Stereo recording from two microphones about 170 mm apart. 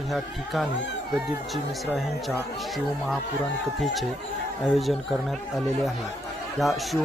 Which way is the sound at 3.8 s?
Centre (ahead or behind).